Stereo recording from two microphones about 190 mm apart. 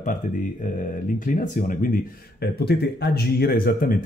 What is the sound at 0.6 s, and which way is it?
Speech, 45° left (ahead or behind).